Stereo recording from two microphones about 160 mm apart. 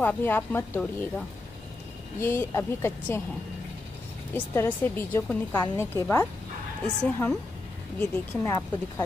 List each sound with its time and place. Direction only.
0.0 s a woman's voice: 10° left (ahead or behind)
4.6 s a woman's voice: 10° left (ahead or behind)
8.0 s speech: 20° left (ahead or behind)